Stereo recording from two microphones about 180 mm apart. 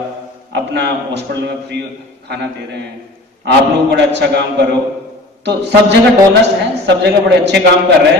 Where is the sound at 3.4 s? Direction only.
70° right (ahead or behind).